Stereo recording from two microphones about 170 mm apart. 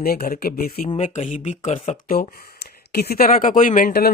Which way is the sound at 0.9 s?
40° left (ahead or behind).